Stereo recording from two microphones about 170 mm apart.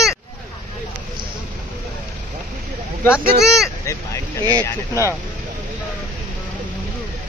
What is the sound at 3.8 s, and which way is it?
Speech, 20° left (ahead or behind).